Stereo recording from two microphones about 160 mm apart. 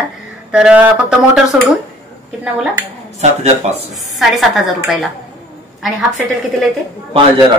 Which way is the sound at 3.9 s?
Centre (ahead or behind).